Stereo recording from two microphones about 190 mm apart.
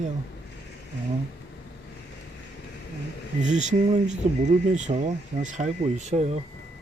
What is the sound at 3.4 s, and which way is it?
Speech, 40° right (ahead or behind).